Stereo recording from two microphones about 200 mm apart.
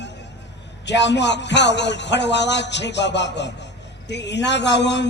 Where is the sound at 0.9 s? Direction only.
60° left (ahead or behind).